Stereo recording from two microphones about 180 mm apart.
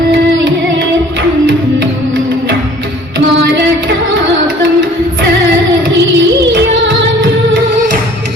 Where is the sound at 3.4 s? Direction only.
75° right (ahead or behind).